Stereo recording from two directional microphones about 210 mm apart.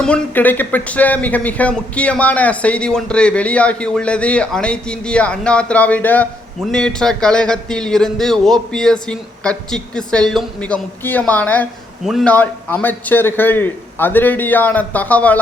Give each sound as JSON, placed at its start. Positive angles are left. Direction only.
{"t": 0.0, "sound": "speech", "side_deg": 5}